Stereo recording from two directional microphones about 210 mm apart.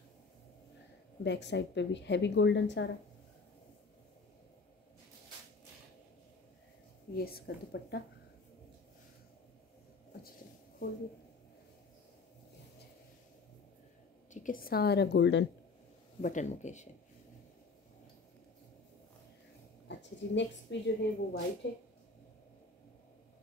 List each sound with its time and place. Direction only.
1.2 s a woman's voice: 55° left (ahead or behind)
7.2 s a woman's voice: 45° left (ahead or behind)
10.8 s speech: 40° left (ahead or behind)
14.3 s a woman's voice: 40° left (ahead or behind); by 15.4 s 55° left (ahead or behind)
16.2 s speech: 35° left (ahead or behind)
19.9 s a woman's voice: 60° left (ahead or behind)